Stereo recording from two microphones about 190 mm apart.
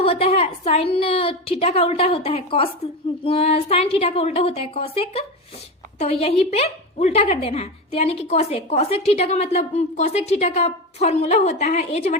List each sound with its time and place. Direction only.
0.0 s a woman's voice: 30° left (ahead or behind)